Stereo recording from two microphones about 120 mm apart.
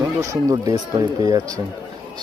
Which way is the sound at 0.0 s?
30° right (ahead or behind).